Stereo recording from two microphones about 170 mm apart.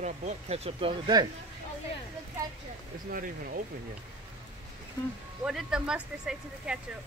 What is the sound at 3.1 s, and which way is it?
Speech, 55° right (ahead or behind).